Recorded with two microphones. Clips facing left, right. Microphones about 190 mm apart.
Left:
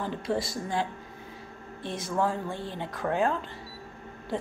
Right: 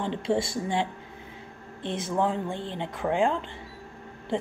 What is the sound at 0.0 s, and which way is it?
Speech, 25° right (ahead or behind).